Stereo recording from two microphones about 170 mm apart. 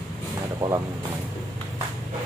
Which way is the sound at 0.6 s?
20° right (ahead or behind).